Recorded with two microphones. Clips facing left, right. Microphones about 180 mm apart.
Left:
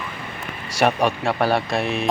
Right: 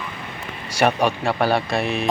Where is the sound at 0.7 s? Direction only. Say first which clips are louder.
Even; centre (ahead or behind).